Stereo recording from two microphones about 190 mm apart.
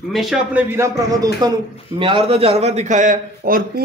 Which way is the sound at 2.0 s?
30° right (ahead or behind).